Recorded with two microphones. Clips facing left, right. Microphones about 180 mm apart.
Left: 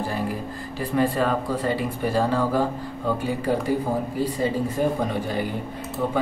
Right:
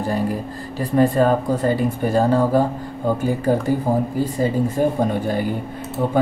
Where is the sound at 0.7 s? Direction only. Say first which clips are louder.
Right 6 dB; 40° right (ahead or behind).